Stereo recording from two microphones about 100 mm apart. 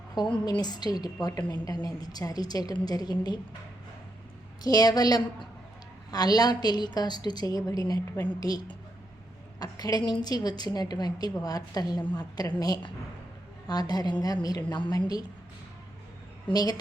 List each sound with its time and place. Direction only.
0.4 s a woman's voice: 45° left (ahead or behind)
4.6 s a woman's voice: 40° left (ahead or behind)
8.1 s a woman's voice: 20° left (ahead or behind)
8.4 s a woman's voice: 40° left (ahead or behind)
16.5 s a woman's voice: 40° left (ahead or behind)